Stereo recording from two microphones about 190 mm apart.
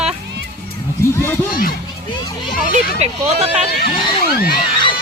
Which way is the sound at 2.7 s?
35° right (ahead or behind).